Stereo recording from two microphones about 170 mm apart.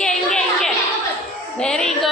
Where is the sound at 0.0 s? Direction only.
5° left (ahead or behind).